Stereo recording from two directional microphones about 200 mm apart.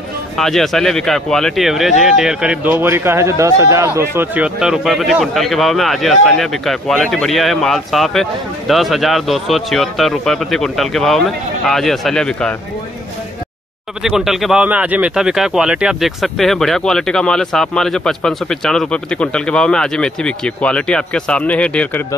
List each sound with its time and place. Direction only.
0.4 s speech: centre (ahead or behind)
14.0 s speech: centre (ahead or behind)